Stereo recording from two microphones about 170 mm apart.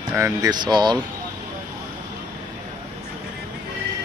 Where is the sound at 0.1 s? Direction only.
15° right (ahead or behind).